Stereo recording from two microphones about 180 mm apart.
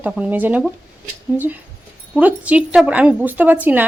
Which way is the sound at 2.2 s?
10° right (ahead or behind).